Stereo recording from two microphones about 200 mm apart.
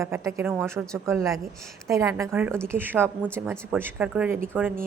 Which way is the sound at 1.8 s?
15° right (ahead or behind).